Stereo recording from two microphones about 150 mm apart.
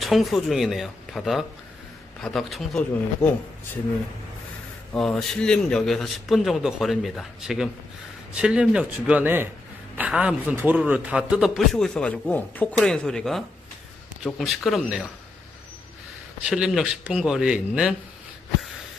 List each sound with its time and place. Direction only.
0.0 s a man's voice: centre (ahead or behind)
4.9 s a man's voice: 5° left (ahead or behind)
16.4 s a man's voice: 5° right (ahead or behind)